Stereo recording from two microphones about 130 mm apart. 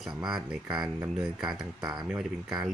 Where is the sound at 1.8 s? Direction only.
30° right (ahead or behind).